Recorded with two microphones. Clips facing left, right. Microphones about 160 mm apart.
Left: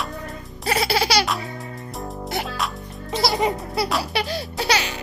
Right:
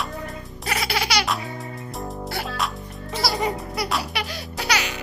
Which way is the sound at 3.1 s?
20° left (ahead or behind).